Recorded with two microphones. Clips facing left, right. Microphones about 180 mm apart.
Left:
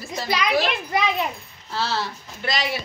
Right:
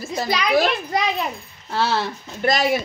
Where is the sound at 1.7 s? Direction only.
55° right (ahead or behind).